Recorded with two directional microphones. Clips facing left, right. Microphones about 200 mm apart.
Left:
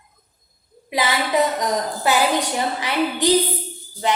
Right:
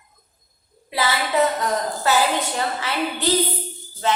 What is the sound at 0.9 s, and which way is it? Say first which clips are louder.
A woman's voice: left 2 dB; 15° left (ahead or behind).